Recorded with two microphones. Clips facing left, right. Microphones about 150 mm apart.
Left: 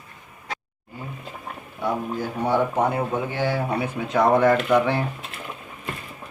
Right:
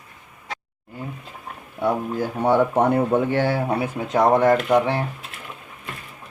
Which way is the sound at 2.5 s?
60° right (ahead or behind).